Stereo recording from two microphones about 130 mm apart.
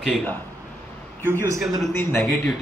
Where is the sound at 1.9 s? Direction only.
15° left (ahead or behind).